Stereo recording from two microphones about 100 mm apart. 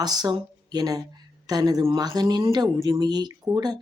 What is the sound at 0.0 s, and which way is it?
Speech, 40° right (ahead or behind).